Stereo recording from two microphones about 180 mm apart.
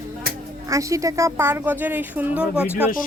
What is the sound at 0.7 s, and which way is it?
Speech, 15° right (ahead or behind).